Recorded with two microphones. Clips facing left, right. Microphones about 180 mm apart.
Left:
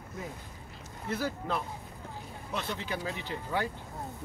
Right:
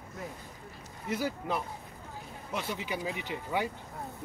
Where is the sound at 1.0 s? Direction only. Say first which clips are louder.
Right 1 dB; 10° right (ahead or behind).